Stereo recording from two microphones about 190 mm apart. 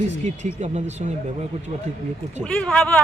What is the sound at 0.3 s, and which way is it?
Speech, 35° right (ahead or behind).